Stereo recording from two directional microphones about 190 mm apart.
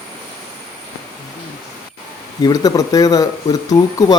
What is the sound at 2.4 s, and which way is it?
A man's voice, 20° left (ahead or behind).